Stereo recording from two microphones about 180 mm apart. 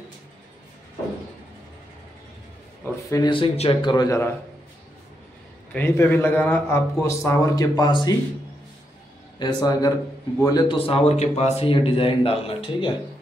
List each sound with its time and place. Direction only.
2.8 s a man's voice: 20° left (ahead or behind)
3.9 s a man's voice: 20° left (ahead or behind)
5.7 s a man's voice: 10° left (ahead or behind)
9.4 s a man's voice: 25° left (ahead or behind)